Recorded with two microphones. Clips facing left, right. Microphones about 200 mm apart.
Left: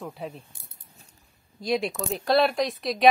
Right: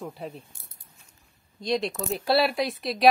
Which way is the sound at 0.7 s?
35° left (ahead or behind).